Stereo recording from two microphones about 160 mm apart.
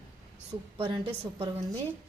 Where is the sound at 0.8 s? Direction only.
35° right (ahead or behind).